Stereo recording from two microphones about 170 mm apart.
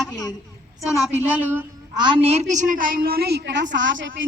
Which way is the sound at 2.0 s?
30° right (ahead or behind).